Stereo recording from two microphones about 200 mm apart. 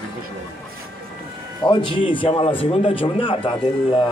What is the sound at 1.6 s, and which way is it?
A man's voice, 25° left (ahead or behind).